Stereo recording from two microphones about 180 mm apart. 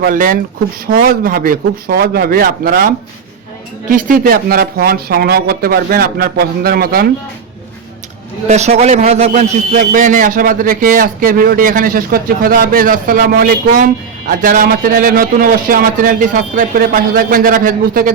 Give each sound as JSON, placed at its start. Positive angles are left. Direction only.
{"t": 0.0, "sound": "a man's voice", "side_deg": -50}
{"t": 8.4, "sound": "a man's voice", "side_deg": -40}